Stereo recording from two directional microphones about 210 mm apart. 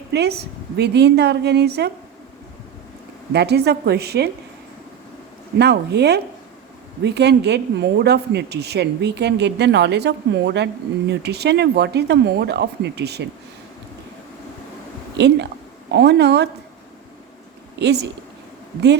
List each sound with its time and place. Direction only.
0.1 s speech: 50° right (ahead or behind)
3.3 s speech: 50° right (ahead or behind)
5.5 s speech: 50° right (ahead or behind)
15.9 s speech: 55° right (ahead or behind)
17.7 s speech: 55° right (ahead or behind)